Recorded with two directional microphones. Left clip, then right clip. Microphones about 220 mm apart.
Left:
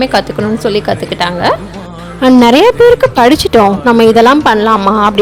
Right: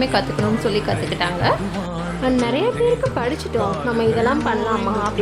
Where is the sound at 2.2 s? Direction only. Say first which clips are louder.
Left 14 dB; 50° left (ahead or behind).